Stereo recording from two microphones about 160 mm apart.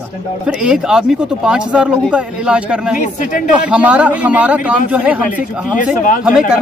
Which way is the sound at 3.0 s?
50° left (ahead or behind).